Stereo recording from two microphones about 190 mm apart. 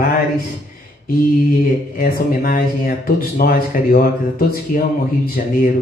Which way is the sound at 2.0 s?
50° left (ahead or behind).